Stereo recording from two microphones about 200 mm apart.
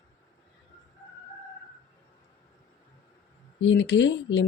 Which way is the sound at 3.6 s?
70° left (ahead or behind).